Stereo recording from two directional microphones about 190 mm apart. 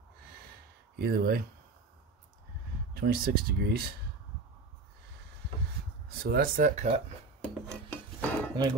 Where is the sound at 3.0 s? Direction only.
50° right (ahead or behind).